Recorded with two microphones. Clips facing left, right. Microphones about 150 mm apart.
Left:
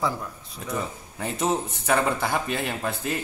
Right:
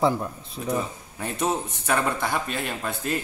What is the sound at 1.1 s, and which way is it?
A man's voice, centre (ahead or behind).